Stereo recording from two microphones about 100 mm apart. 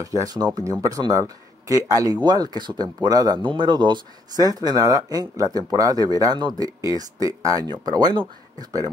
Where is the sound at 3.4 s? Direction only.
50° right (ahead or behind).